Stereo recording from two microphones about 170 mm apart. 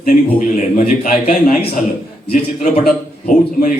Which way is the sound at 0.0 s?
45° left (ahead or behind).